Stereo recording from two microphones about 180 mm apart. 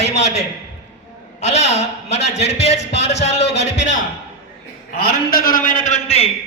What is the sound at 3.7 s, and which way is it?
Speech, 90° left.